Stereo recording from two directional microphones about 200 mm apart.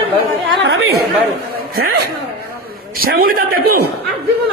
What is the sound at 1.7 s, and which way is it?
A man's voice, 50° right (ahead or behind).